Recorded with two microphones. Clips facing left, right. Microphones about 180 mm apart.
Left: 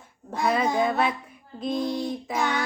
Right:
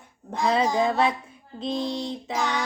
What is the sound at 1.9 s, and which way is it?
Music, 25° right (ahead or behind).